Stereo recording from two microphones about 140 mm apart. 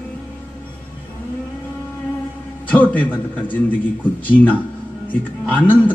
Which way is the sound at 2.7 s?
10° left (ahead or behind).